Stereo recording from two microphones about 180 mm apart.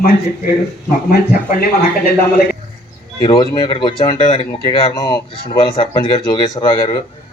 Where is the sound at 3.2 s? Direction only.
25° left (ahead or behind).